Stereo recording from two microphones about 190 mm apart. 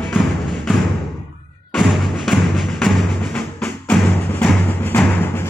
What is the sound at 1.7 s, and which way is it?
Music, centre (ahead or behind).